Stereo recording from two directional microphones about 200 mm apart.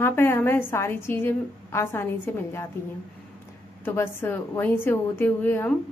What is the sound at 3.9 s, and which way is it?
A woman's voice, 10° left (ahead or behind).